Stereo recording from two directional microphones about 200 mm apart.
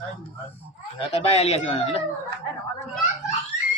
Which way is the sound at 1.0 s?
30° left (ahead or behind).